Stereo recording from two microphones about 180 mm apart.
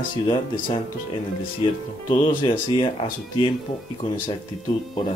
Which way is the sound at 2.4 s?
30° left (ahead or behind).